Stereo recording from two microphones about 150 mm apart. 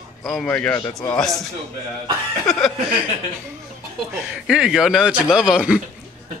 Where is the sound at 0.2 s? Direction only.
5° left (ahead or behind).